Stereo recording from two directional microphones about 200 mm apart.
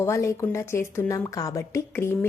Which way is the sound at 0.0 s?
15° left (ahead or behind).